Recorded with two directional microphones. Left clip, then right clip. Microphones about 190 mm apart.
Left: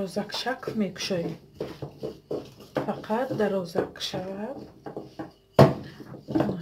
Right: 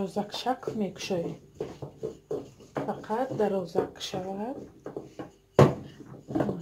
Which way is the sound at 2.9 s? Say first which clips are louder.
Left 1 dB; centre (ahead or behind).